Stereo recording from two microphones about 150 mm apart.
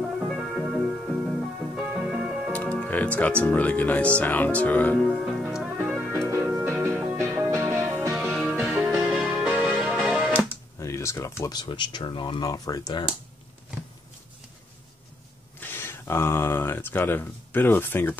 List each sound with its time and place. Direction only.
0.6 s music: 5° right (ahead or behind)
2.5 s music: 10° left (ahead or behind)
3.4 s speech: 10° left (ahead or behind)
5.0 s music: 5° right (ahead or behind)
6.1 s music: 15° right (ahead or behind)
8.2 s music: 5° left (ahead or behind)
10.8 s speech: 20° left (ahead or behind)
15.6 s speech: 15° left (ahead or behind)